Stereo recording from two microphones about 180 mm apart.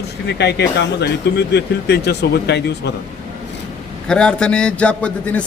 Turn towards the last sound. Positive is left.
turn(degrees=5)  # may be behind; listen again after turning